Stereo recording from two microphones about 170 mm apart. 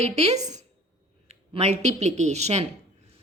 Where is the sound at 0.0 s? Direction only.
40° right (ahead or behind).